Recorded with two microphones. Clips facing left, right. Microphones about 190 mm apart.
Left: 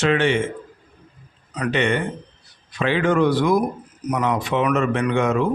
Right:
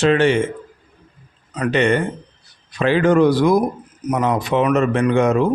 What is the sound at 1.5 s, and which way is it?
A man's voice, 45° right (ahead or behind).